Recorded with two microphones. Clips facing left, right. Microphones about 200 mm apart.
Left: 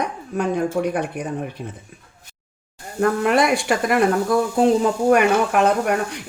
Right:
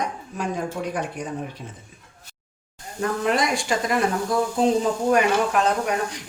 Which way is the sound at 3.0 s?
60° left (ahead or behind).